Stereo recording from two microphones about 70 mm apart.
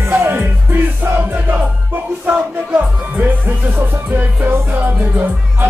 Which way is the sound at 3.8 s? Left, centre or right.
Right.